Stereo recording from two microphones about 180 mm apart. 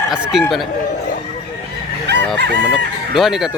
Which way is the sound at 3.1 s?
Centre (ahead or behind).